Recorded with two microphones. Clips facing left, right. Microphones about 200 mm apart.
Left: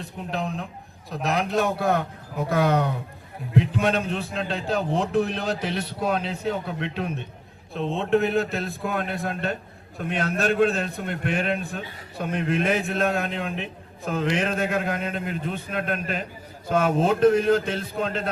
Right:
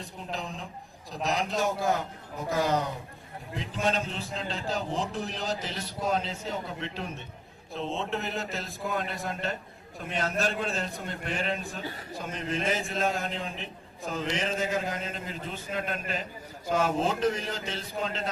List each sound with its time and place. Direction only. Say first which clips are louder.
0.0 s a man's voice: left 7 dB; 60° left (ahead or behind)